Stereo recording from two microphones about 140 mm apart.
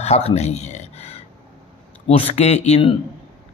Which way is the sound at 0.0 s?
50° left (ahead or behind).